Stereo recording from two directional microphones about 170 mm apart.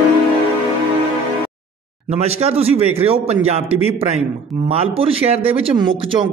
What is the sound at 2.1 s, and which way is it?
Speech, 35° right (ahead or behind).